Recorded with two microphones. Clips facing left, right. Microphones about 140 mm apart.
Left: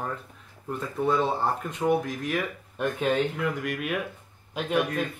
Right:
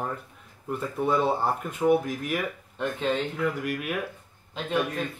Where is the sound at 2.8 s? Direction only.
15° left (ahead or behind).